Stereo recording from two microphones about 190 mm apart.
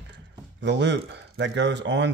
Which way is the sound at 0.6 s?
65° right (ahead or behind).